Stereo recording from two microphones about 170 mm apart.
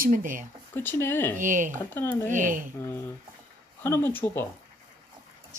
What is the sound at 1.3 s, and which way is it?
Speech, 50° right (ahead or behind).